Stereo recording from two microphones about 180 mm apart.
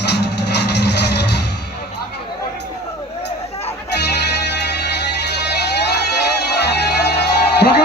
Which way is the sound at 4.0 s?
70° left (ahead or behind).